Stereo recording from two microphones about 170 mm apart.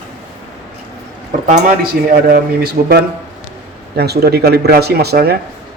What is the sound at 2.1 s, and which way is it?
A man's voice, 60° right (ahead or behind).